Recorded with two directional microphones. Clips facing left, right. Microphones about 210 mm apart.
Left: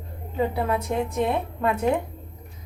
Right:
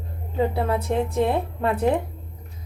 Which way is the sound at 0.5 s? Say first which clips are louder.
Right 2 dB; 30° right (ahead or behind).